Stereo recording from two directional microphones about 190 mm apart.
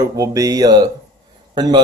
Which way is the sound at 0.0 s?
20° right (ahead or behind).